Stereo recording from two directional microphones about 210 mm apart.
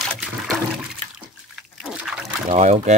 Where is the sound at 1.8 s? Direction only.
5° right (ahead or behind).